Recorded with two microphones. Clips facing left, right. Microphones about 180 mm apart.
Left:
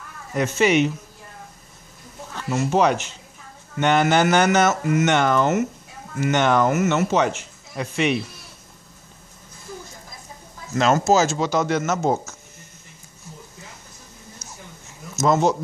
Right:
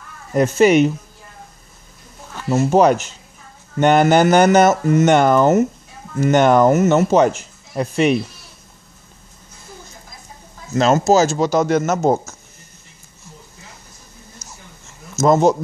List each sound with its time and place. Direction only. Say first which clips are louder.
0.3 s speech: right 6 dB; 45° right (ahead or behind)
2.5 s speech: right 6 dB; 40° right (ahead or behind)
6.7 s speech: right 6 dB; 30° right (ahead or behind)
7.0 s speech: right 6 dB; 40° right (ahead or behind)
10.7 s speech: right 4 dB; 35° right (ahead or behind)